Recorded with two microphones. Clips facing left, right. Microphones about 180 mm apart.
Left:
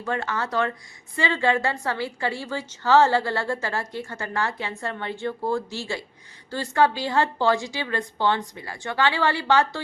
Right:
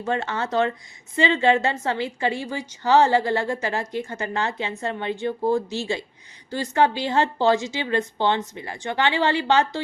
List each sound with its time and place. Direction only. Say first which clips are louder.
0.0 s a woman's voice: right 2 dB; 25° right (ahead or behind)